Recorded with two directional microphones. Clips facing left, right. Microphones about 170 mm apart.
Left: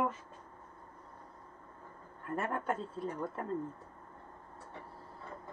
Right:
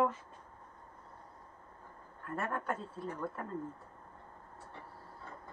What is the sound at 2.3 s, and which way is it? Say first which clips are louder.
Speech: left 2 dB; 20° left (ahead or behind).